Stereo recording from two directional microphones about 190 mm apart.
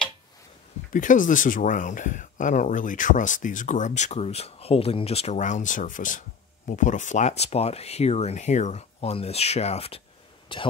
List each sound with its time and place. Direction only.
0.9 s speech: 45° left (ahead or behind); by 10.6 s 25° left (ahead or behind)